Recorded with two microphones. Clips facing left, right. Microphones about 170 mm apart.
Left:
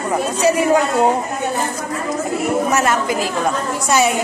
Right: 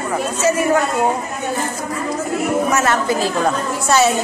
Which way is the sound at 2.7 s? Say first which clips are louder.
Even; 15° left (ahead or behind).